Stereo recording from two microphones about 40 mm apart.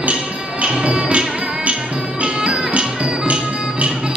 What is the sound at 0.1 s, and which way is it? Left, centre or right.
Music, right.